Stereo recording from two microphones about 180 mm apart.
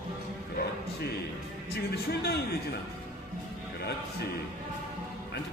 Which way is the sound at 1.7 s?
60° left (ahead or behind).